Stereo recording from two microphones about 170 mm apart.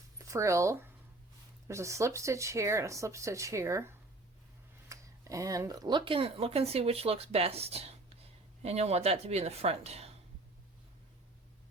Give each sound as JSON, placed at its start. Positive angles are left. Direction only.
{"t": 0.3, "sound": "speech", "side_deg": -15}